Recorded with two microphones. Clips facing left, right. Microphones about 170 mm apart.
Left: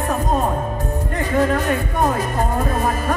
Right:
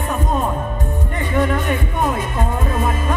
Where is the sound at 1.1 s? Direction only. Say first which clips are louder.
Left 1 dB; 40° left (ahead or behind).